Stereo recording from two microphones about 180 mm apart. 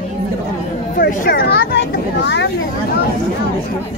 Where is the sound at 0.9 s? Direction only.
50° left (ahead or behind); by 2.5 s 75° left (ahead or behind).